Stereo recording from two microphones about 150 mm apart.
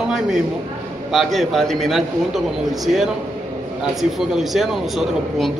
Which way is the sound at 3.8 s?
Centre (ahead or behind).